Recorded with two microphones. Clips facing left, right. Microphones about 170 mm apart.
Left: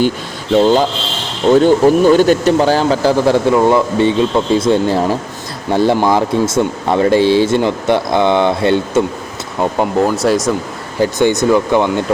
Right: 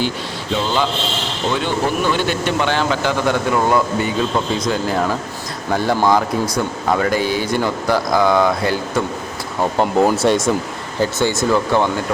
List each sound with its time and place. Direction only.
0.5 s speech: 45° left (ahead or behind); by 9.0 s 25° left (ahead or behind)
9.7 s speech: centre (ahead or behind)
11.0 s speech: 20° left (ahead or behind)